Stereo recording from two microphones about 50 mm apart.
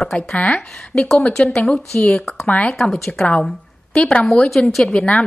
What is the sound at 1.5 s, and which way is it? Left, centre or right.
Speech, centre.